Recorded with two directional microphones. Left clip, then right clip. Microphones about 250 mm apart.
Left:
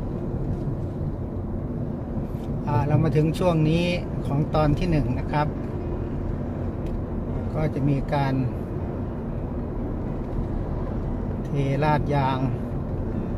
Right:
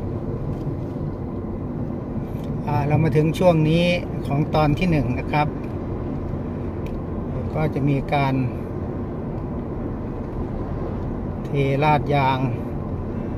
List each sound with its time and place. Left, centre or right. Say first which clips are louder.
2.9 s speech: right 4 dB; centre
7.6 s speech: right 3 dB; right
11.5 s speech: right 5 dB; right